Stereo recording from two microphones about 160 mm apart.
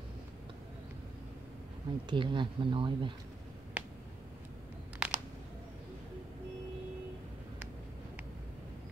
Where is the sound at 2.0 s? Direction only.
30° right (ahead or behind).